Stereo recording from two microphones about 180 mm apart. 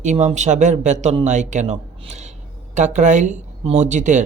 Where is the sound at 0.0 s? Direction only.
40° right (ahead or behind).